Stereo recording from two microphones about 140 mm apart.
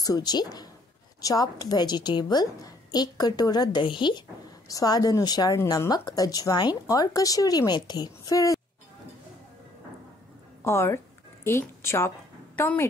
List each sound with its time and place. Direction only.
0.0 s a woman's voice: 25° left (ahead or behind)
10.6 s a woman's voice: 20° left (ahead or behind)